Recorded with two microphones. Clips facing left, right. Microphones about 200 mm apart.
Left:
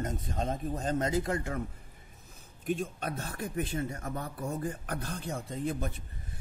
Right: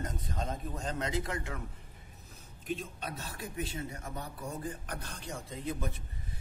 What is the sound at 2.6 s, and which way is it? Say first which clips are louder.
A man's voice: left 5 dB; 50° left (ahead or behind).